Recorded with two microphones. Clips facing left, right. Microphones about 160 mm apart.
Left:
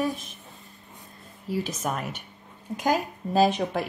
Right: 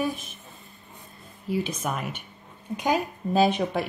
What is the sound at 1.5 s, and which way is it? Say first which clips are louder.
Speech: right 1 dB; centre (ahead or behind).